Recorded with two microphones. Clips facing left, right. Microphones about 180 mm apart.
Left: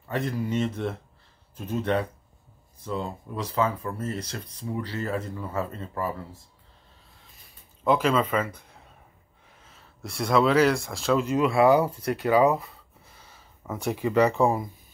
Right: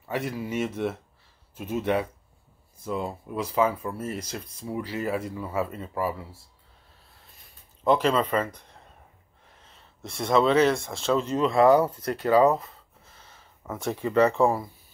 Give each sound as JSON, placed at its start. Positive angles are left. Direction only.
{"t": 0.1, "sound": "speech", "side_deg": -5}
{"t": 7.8, "sound": "speech", "side_deg": 5}
{"t": 10.1, "sound": "speech", "side_deg": 5}
{"t": 10.7, "sound": "speech", "side_deg": -25}
{"t": 11.0, "sound": "speech", "side_deg": 10}
{"t": 13.7, "sound": "speech", "side_deg": 15}